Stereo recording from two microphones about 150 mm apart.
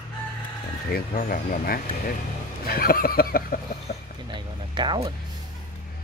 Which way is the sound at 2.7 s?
80° left.